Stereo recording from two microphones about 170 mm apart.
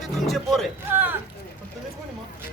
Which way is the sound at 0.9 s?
10° right (ahead or behind).